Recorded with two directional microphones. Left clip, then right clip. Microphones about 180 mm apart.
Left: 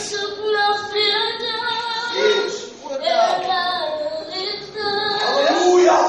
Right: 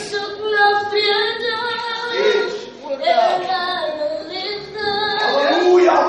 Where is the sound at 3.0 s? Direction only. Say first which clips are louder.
Right 2 dB; centre (ahead or behind).